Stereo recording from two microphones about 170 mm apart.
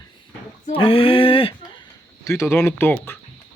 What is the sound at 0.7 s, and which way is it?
Speech, 30° left (ahead or behind).